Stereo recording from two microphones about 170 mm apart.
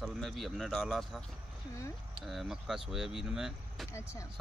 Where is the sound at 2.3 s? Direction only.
Centre (ahead or behind).